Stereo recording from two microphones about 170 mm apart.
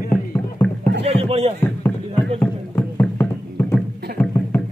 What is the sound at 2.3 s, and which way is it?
Music, 10° left (ahead or behind).